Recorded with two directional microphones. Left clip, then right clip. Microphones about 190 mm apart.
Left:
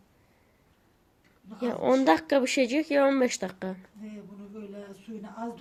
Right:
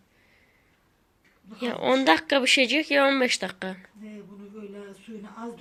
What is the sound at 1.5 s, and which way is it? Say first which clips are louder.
A woman's voice: right 1 dB; 10° left (ahead or behind).